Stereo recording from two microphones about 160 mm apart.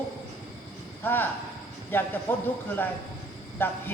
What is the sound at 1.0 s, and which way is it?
Speech, 15° left (ahead or behind).